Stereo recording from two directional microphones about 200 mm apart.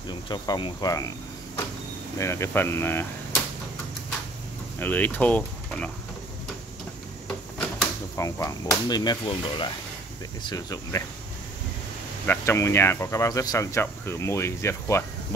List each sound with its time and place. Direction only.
0.1 s speech: 20° left (ahead or behind)
2.1 s speech: 15° left (ahead or behind)
4.7 s speech: 10° left (ahead or behind)
8.2 s speech: 15° left (ahead or behind)
12.3 s speech: 15° left (ahead or behind)